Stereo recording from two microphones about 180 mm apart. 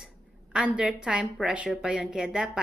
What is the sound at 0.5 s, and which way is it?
A woman's voice, 5° right (ahead or behind).